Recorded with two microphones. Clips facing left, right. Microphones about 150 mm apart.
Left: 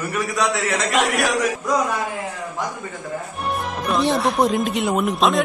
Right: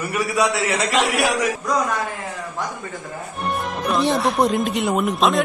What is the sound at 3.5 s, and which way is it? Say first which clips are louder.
Speech: even; centre (ahead or behind).